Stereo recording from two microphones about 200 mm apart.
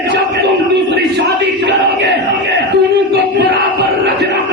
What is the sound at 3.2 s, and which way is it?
Music, 55° right (ahead or behind).